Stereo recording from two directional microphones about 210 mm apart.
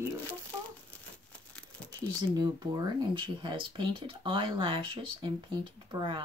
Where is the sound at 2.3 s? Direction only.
20° right (ahead or behind).